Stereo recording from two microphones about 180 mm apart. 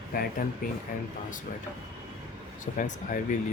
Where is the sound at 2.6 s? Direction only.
45° left (ahead or behind).